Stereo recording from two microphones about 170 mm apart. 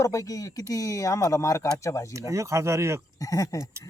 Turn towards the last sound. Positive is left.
turn(degrees=20)  # may be behind; listen again after turning